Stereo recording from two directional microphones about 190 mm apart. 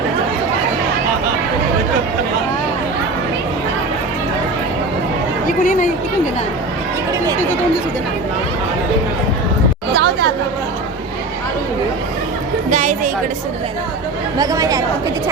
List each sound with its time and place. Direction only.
5.5 s speech: 40° left (ahead or behind)
9.9 s chatter: 60° right (ahead or behind)
12.7 s music: 40° right (ahead or behind)
14.3 s chatter: 20° right (ahead or behind)